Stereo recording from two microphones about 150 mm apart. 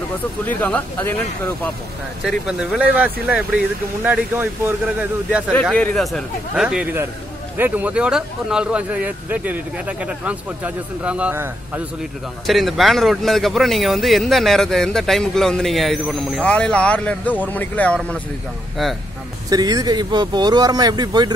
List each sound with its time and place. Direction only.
0.5 s speech: 10° left (ahead or behind)
2.2 s a man's voice: centre (ahead or behind)
5.5 s a man's voice: 10° left (ahead or behind); by 11.8 s 15° right (ahead or behind)
12.4 s a man's voice: centre (ahead or behind)
19.5 s speech: 25° right (ahead or behind)